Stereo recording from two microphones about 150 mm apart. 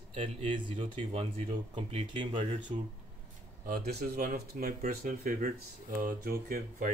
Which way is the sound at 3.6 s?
80° right.